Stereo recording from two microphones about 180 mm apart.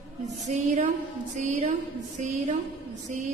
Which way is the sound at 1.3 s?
40° right (ahead or behind).